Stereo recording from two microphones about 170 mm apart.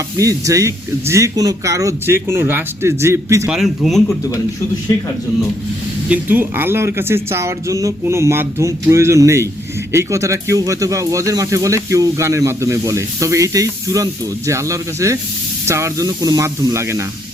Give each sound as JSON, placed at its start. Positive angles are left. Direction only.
{"t": 0.2, "sound": "speech", "side_deg": -20}
{"t": 3.5, "sound": "speech", "side_deg": 0}
{"t": 6.1, "sound": "speech", "side_deg": -10}